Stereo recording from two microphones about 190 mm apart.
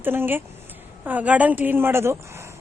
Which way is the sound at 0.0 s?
10° right (ahead or behind).